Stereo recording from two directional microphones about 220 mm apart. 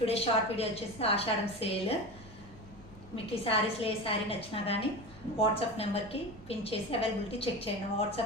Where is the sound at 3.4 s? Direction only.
25° left (ahead or behind).